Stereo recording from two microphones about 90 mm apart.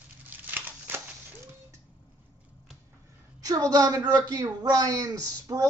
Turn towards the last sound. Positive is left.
turn(degrees=-45)  # may be behind; listen again after turning